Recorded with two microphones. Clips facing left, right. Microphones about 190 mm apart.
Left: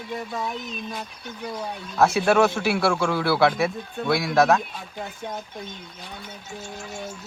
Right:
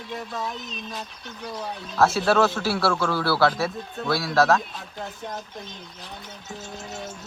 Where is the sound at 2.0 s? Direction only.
15° left (ahead or behind).